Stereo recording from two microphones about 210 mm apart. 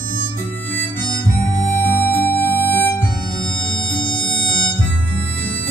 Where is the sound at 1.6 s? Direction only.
10° left (ahead or behind).